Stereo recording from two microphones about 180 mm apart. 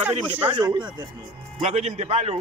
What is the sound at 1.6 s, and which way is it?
Speech, 35° right (ahead or behind).